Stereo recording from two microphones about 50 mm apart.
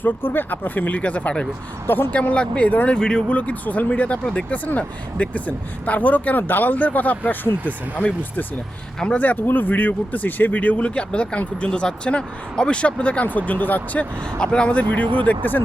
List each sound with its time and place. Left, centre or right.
0.0 s speech: left
14.3 s speech: centre